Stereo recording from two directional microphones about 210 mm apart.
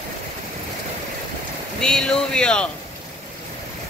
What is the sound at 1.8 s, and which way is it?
Speech, 5° left (ahead or behind).